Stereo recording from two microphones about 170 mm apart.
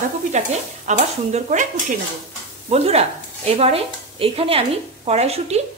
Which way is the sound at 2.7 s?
35° right (ahead or behind).